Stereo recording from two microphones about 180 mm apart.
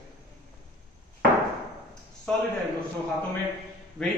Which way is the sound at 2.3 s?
5° left (ahead or behind).